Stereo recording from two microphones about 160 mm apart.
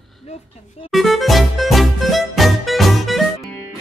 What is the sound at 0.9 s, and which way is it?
Music, centre (ahead or behind).